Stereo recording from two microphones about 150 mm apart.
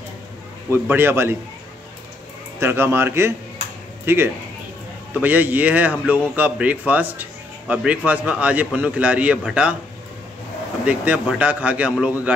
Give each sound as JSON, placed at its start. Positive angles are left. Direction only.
{"t": 0.7, "sound": "a man's voice", "side_deg": -15}
{"t": 2.6, "sound": "a man's voice", "side_deg": -15}
{"t": 10.9, "sound": "a man's voice", "side_deg": -10}